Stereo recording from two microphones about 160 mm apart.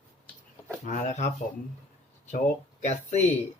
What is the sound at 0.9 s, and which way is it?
Speech, 50° left (ahead or behind).